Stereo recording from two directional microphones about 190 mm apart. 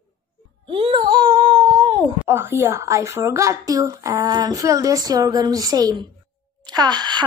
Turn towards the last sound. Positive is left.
turn(degrees=-20)  # may be behind; listen again after turning